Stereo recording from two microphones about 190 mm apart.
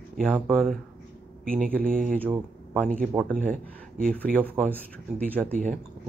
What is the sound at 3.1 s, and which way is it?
Speech, centre (ahead or behind).